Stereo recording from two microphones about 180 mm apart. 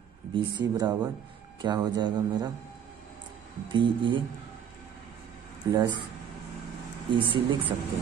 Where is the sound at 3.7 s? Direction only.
30° right (ahead or behind).